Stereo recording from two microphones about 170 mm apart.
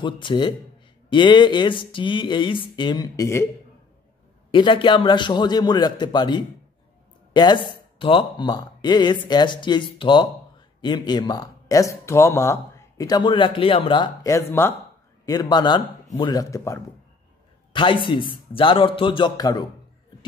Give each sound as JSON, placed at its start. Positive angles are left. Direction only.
{"t": 0.0, "sound": "speech", "side_deg": 30}
{"t": 4.5, "sound": "speech", "side_deg": 30}
{"t": 17.7, "sound": "speech", "side_deg": 30}